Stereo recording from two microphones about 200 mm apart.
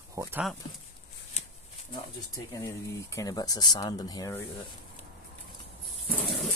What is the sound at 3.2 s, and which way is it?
Speech, 20° left (ahead or behind).